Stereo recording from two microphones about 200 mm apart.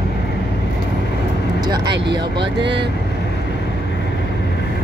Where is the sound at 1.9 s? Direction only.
55° right (ahead or behind).